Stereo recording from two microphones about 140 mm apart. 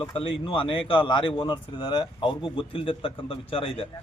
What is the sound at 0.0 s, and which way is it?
A man's voice, 40° left (ahead or behind).